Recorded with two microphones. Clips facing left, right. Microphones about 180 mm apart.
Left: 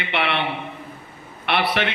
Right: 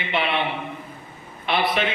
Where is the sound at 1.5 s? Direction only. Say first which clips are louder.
Even; 70° left (ahead or behind).